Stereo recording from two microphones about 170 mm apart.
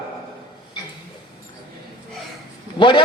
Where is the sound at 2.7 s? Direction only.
30° left (ahead or behind).